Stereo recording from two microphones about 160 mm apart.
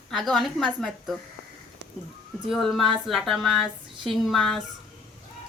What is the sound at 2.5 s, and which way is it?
A woman's voice, centre (ahead or behind).